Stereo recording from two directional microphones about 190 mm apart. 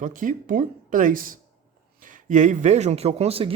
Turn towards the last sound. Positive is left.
turn(degrees=-30)  # may be behind; listen again after turning